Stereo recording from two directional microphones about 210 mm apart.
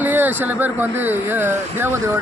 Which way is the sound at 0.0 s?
10° right (ahead or behind).